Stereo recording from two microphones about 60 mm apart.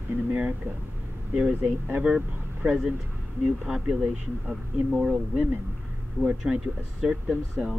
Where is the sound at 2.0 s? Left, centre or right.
Centre.